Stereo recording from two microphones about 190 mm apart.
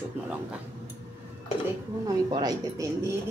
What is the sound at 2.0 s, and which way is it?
Speech, 20° right (ahead or behind).